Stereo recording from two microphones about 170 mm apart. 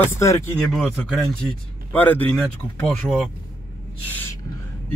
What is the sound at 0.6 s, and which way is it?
Speech, 5° left (ahead or behind).